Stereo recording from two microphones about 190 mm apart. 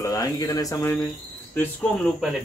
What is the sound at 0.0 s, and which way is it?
Speech, 20° left (ahead or behind).